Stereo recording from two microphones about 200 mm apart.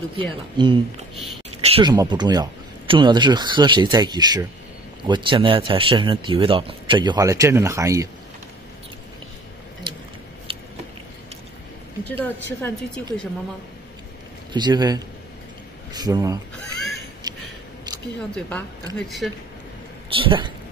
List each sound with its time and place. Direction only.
0.2 s speech: 25° right (ahead or behind)
9.9 s a sound: 25° right (ahead or behind)
12.1 s a woman's voice: 10° left (ahead or behind)
14.5 s speech: 20° right (ahead or behind)
17.3 s a sound: 20° right (ahead or behind)
18.9 s speech: centre (ahead or behind)
20.1 s speech: 25° right (ahead or behind)